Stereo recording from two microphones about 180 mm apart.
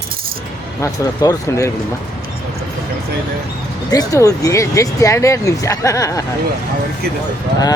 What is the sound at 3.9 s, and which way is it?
Speech, 20° left (ahead or behind).